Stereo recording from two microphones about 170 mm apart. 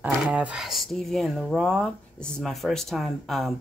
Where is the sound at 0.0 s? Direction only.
10° right (ahead or behind).